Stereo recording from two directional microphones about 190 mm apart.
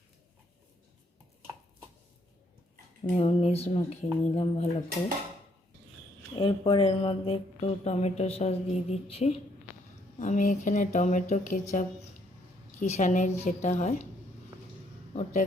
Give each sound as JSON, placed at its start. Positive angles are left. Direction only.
{"t": 3.2, "sound": "speech", "side_deg": 35}
{"t": 6.3, "sound": "speech", "side_deg": 25}
{"t": 12.8, "sound": "speech", "side_deg": 35}
{"t": 15.1, "sound": "speech", "side_deg": 40}